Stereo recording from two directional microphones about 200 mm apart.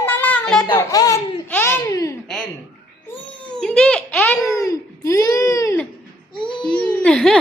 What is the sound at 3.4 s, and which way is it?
Crying, 5° left (ahead or behind).